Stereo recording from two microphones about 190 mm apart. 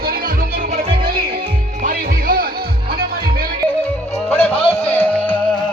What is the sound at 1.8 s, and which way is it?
Music, 50° right (ahead or behind).